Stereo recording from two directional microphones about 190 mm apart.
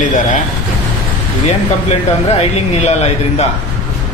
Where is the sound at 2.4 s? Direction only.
35° left (ahead or behind).